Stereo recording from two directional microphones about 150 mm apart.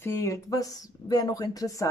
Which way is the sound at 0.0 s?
20° left (ahead or behind).